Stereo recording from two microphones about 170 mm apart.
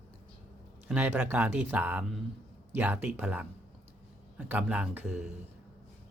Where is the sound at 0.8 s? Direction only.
10° right (ahead or behind).